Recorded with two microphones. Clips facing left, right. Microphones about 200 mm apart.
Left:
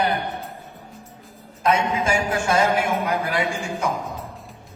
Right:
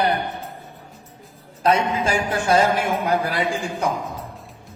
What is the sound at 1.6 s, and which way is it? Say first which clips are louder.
A man's voice: right 1 dB; 35° right (ahead or behind).